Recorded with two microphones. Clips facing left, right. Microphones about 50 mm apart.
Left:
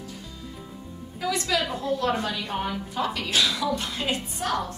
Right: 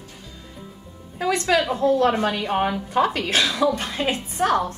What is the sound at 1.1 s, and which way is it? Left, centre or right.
Speech, right.